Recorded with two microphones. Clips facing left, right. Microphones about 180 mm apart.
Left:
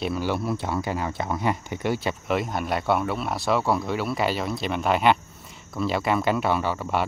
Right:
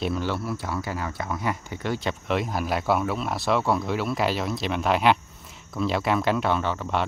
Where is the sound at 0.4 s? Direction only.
25° left (ahead or behind).